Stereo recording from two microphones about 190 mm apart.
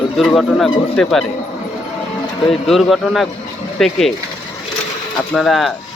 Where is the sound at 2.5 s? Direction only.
Centre (ahead or behind).